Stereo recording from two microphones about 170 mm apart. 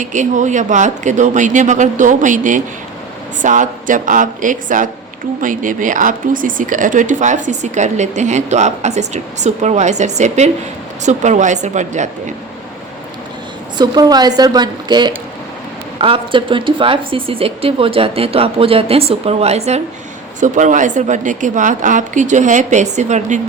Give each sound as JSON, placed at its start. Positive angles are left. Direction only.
{"t": 0.0, "sound": "speech", "side_deg": -45}
{"t": 13.7, "sound": "a woman's voice", "side_deg": -25}